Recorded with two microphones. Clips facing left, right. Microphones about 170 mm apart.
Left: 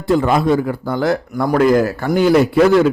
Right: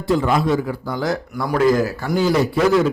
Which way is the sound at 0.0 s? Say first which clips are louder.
Left 3 dB; 55° left (ahead or behind).